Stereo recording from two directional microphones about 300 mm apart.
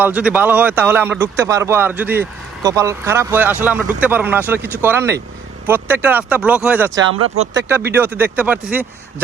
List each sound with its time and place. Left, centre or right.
0.0 s a man's voice: centre
7.1 s speech: right
7.5 s a man's voice: centre